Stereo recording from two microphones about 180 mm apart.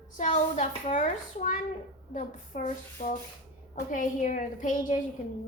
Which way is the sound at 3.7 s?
45° left (ahead or behind).